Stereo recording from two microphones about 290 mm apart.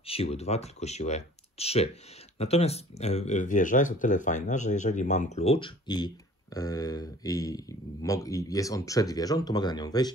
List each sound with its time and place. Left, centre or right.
0.0 s speech: centre